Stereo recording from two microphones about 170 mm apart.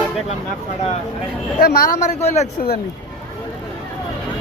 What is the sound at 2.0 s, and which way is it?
Speech, 40° left (ahead or behind).